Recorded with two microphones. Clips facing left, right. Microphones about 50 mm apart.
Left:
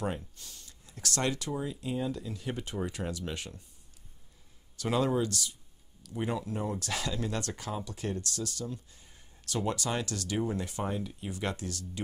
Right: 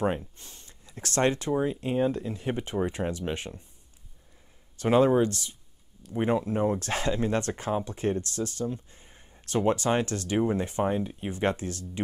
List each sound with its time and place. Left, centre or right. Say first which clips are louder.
0.0 s speech: right 7 dB; right
4.7 s speech: right 8 dB; right